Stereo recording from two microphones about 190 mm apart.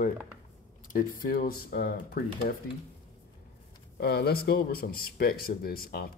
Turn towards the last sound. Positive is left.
turn(degrees=50)  # may be behind; listen again after turning